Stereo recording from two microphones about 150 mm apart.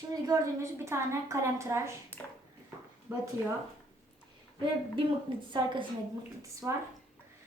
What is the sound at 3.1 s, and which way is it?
Speech, 15° right (ahead or behind).